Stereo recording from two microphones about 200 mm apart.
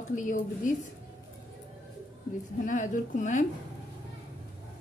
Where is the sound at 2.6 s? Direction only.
40° left (ahead or behind).